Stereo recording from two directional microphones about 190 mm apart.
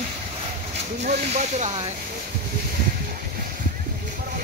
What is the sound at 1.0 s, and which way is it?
Speech, 40° right (ahead or behind).